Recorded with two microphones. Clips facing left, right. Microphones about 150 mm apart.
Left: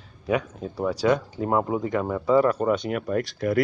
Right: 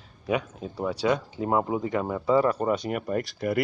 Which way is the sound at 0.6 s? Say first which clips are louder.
Left 3 dB; 5° right (ahead or behind).